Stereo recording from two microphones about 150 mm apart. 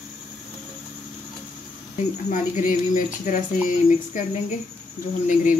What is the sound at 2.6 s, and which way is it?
Speech, 60° left (ahead or behind).